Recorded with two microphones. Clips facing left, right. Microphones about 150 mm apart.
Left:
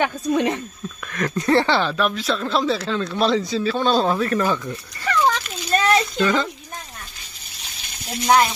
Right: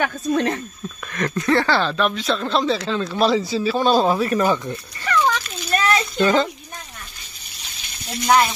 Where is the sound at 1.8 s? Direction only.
5° left (ahead or behind); by 4.6 s 15° right (ahead or behind).